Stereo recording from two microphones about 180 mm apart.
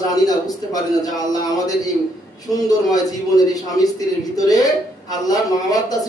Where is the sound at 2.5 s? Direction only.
Centre (ahead or behind).